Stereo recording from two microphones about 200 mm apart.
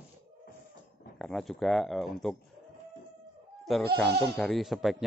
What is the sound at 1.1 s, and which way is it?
Speech, centre (ahead or behind).